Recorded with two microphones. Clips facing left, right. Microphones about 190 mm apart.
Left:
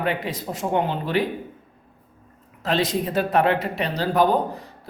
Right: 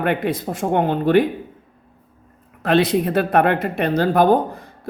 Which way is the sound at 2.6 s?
60° right (ahead or behind).